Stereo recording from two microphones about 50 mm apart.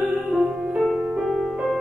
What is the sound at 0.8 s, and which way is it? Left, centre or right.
Music, centre.